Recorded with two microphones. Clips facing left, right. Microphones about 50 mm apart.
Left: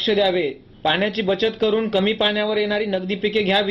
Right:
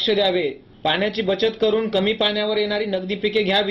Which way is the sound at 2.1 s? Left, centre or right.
Centre.